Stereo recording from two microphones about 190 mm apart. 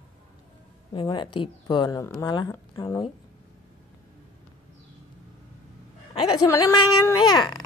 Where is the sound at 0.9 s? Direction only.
25° left (ahead or behind).